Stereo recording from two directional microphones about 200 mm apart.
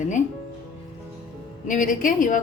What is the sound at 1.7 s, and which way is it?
Speech, 40° left (ahead or behind).